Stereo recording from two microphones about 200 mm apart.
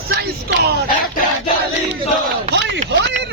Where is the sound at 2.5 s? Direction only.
60° right (ahead or behind).